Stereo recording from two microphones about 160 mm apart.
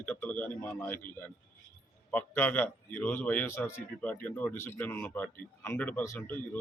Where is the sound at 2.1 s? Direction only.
10° left (ahead or behind).